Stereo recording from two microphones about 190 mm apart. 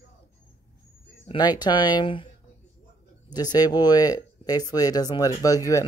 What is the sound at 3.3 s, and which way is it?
Speech, 20° left (ahead or behind).